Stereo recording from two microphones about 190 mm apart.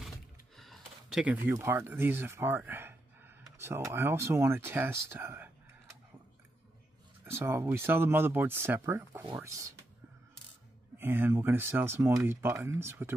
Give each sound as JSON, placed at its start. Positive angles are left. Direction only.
{"t": 0.6, "sound": "speech", "side_deg": 0}
{"t": 7.2, "sound": "speech", "side_deg": -15}
{"t": 11.0, "sound": "speech", "side_deg": -10}